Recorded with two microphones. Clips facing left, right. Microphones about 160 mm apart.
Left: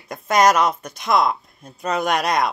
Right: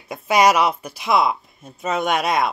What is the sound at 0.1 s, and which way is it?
Speech, 5° right (ahead or behind).